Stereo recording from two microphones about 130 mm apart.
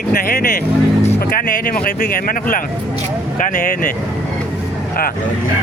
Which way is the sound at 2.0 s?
90° left.